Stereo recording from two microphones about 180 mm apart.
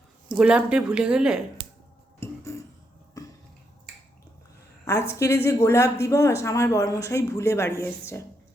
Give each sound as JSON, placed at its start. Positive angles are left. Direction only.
{"t": 0.3, "sound": "speech", "side_deg": -5}
{"t": 2.2, "sound": "a sound", "side_deg": 15}
{"t": 3.2, "sound": "cough", "side_deg": 20}
{"t": 4.9, "sound": "speech", "side_deg": 15}